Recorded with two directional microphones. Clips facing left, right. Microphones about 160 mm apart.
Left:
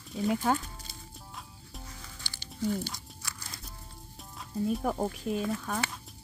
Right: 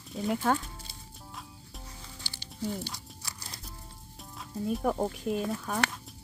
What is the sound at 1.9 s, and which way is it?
Music, 20° right (ahead or behind).